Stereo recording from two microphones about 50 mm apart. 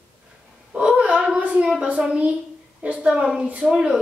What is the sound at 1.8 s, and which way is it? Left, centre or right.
A woman's voice, right.